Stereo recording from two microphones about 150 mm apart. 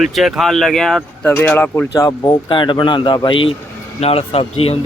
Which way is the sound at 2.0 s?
25° left (ahead or behind).